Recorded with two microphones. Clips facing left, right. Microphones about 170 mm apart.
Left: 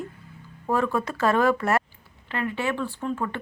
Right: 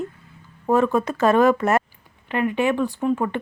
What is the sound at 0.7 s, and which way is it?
Speech, 20° right (ahead or behind).